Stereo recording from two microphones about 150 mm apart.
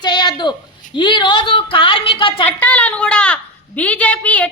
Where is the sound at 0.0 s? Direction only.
30° left (ahead or behind).